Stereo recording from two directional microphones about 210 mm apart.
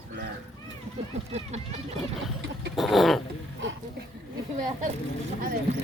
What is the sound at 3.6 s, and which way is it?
Speech, 60° right (ahead or behind).